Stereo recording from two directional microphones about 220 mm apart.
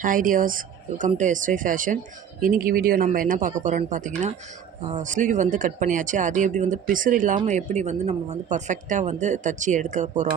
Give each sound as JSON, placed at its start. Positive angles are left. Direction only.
{"t": 0.0, "sound": "speech", "side_deg": -40}